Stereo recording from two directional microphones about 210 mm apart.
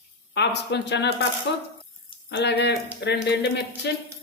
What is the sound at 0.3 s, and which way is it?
Speech, 55° left (ahead or behind).